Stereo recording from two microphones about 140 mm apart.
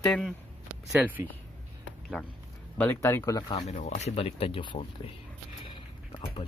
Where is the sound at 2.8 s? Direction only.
15° left (ahead or behind).